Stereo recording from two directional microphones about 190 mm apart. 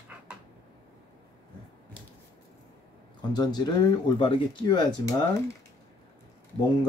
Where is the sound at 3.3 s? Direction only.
20° left (ahead or behind).